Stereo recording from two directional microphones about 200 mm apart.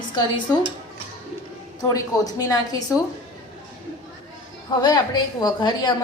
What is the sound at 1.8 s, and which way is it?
A woman's voice, 15° left (ahead or behind).